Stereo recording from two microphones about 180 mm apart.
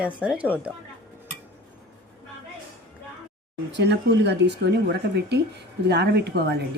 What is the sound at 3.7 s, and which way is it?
Speech, 75° right (ahead or behind).